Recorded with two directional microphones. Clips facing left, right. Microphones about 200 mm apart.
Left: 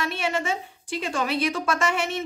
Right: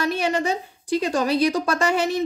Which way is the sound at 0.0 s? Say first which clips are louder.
Right 5 dB; 40° right (ahead or behind).